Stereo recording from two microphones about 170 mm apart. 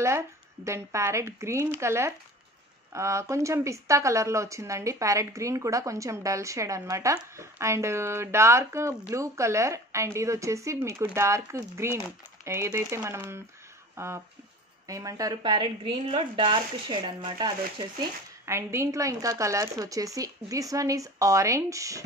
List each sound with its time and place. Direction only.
0.7 s speech: 15° right (ahead or behind)
18.4 s speech: 15° right (ahead or behind)